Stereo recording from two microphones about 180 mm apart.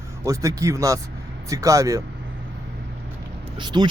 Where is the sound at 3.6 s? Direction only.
25° right (ahead or behind).